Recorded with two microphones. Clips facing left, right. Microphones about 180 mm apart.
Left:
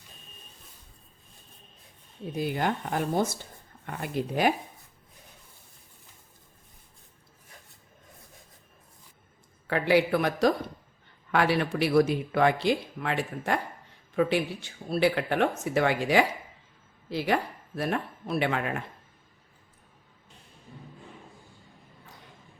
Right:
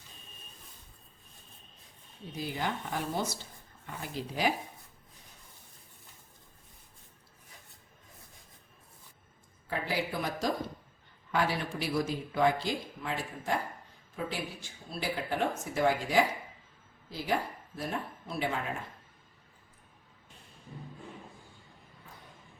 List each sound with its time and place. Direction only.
2.3 s speech: 55° left (ahead or behind)
9.6 s a man's voice: 70° left (ahead or behind)